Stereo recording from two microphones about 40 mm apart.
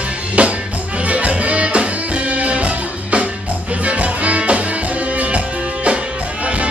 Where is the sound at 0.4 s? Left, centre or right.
Right.